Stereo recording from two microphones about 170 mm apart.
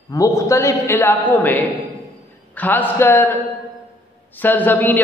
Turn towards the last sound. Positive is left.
turn(degrees=10)  # may be behind; listen again after turning